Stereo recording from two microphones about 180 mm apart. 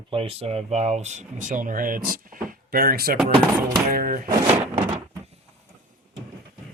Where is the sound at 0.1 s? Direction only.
30° right (ahead or behind); by 4.3 s 50° right (ahead or behind).